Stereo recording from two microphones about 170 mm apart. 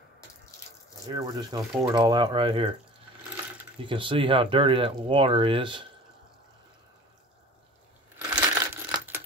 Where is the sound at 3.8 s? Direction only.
30° right (ahead or behind).